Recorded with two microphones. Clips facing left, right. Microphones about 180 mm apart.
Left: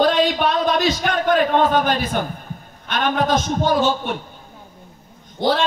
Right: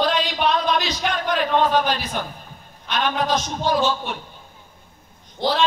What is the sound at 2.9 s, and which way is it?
Speech, 50° left (ahead or behind).